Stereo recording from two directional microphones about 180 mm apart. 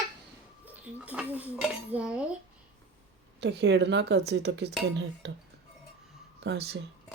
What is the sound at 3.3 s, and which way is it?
A woman's voice, 75° right (ahead or behind).